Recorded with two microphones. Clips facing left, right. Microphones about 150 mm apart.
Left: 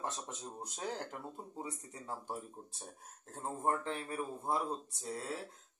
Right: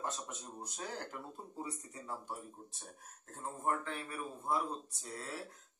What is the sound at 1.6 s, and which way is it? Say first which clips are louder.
Speech: right 1 dB; 25° left (ahead or behind).